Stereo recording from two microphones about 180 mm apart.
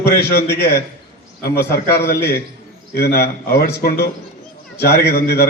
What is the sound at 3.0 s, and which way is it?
Speech, 65° left (ahead or behind).